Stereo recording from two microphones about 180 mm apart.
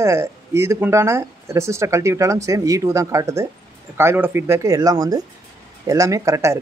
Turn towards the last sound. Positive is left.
turn(degrees=-15)  # may be behind; listen again after turning